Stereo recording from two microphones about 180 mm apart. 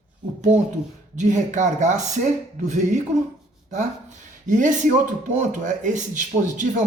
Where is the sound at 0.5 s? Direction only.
40° right (ahead or behind).